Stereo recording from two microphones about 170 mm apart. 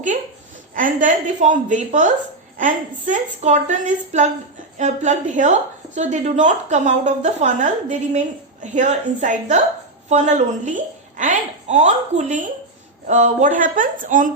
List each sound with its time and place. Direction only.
0.7 s a woman's voice: 50° right (ahead or behind)